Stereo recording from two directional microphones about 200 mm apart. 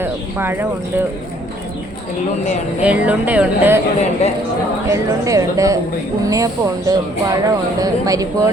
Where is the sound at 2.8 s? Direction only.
5° right (ahead or behind).